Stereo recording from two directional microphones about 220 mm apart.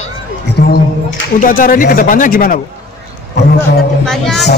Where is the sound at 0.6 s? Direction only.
45° left (ahead or behind).